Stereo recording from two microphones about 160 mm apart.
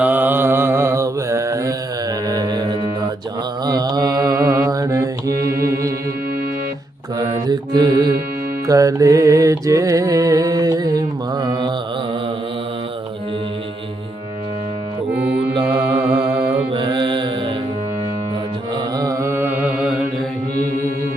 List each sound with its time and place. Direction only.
0.0 s mantra: 10° right (ahead or behind)
2.2 s music: 25° right (ahead or behind)
3.7 s mantra: 25° right (ahead or behind)
5.5 s music: 70° right (ahead or behind)
7.2 s mantra: 25° right (ahead or behind)
8.6 s music: 20° right (ahead or behind)
15.1 s mantra: 10° right (ahead or behind)
16.7 s mantra: 30° right (ahead or behind)
18.9 s mantra: 20° right (ahead or behind)